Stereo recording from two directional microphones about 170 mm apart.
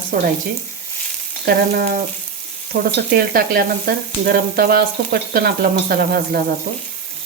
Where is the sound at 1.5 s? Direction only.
60° right (ahead or behind).